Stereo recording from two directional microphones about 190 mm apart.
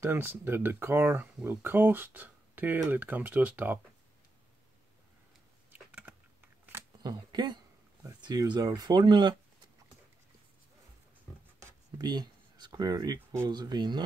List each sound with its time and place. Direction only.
0.0 s speech: 10° right (ahead or behind)
5.7 s typing: 10° right (ahead or behind)
7.0 s speech: 25° right (ahead or behind)
11.6 s speech: 20° right (ahead or behind)